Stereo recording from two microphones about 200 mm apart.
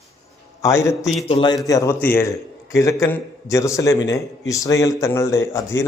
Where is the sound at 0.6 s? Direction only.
15° left (ahead or behind).